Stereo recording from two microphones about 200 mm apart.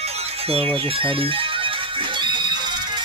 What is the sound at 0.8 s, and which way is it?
Music, 25° right (ahead or behind).